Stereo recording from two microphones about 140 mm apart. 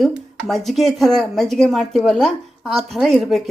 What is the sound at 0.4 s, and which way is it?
Speech, centre (ahead or behind).